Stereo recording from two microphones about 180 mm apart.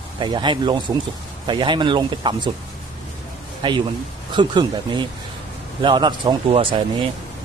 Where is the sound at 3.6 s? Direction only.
25° right (ahead or behind).